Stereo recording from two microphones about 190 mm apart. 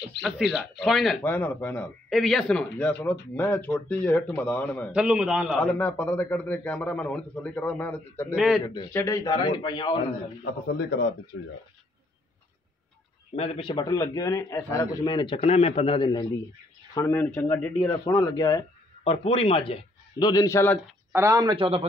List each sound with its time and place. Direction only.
0.2 s speech: centre (ahead or behind)
2.0 s speech: centre (ahead or behind)
4.9 s speech: 5° right (ahead or behind)
5.6 s speech: 10° left (ahead or behind)
8.4 s speech: centre (ahead or behind)
8.6 s a man's voice: 15° left (ahead or behind)
10.8 s speech: 55° left (ahead or behind)
13.4 s a man's voice: 30° left (ahead or behind)
19.0 s a man's voice: 30° left (ahead or behind); by 20.8 s 10° left (ahead or behind)
21.1 s a man's voice: 15° right (ahead or behind)